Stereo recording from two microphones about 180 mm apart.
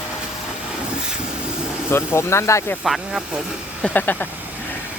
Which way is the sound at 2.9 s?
Centre (ahead or behind).